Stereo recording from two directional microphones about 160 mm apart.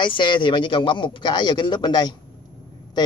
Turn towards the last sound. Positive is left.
turn(degrees=25)  # may be behind; listen again after turning